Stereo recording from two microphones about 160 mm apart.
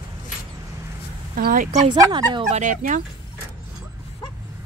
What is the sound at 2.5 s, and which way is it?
Speech, 50° right (ahead or behind).